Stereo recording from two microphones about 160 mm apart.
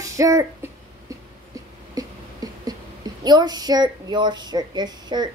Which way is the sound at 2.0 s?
25° right (ahead or behind).